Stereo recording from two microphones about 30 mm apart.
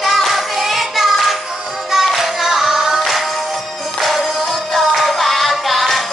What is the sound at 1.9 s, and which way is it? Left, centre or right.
Music, centre.